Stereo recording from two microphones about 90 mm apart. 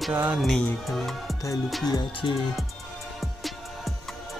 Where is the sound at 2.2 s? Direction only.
65° left (ahead or behind).